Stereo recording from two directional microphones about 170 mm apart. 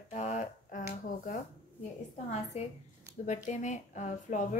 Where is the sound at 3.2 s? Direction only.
45° left (ahead or behind).